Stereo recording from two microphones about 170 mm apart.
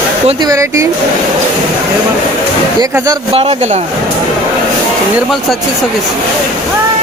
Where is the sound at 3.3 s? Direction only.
40° right (ahead or behind).